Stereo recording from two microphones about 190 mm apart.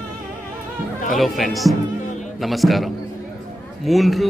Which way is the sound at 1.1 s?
Centre (ahead or behind).